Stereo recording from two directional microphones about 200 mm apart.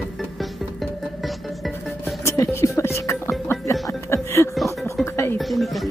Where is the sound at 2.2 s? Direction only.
15° left (ahead or behind).